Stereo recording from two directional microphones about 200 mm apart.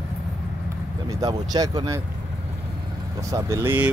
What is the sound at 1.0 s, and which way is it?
Speech, 20° right (ahead or behind).